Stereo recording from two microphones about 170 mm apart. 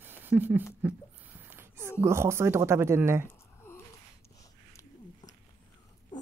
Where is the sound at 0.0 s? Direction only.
10° right (ahead or behind).